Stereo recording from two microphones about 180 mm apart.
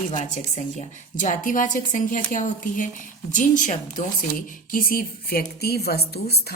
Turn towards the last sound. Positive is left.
turn(degrees=60)  # may be behind; listen again after turning